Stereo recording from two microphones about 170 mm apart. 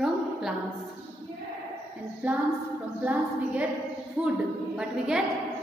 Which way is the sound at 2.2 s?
10° right (ahead or behind).